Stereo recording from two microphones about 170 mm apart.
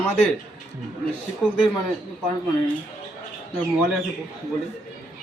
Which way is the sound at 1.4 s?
Centre (ahead or behind).